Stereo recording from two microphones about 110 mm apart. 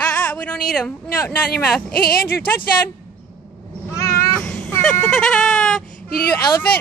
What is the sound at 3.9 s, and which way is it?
Cat, 25° left (ahead or behind).